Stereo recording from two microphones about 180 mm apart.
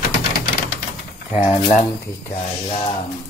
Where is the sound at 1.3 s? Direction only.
10° right (ahead or behind).